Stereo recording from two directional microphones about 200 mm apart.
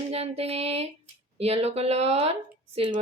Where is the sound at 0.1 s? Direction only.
30° right (ahead or behind).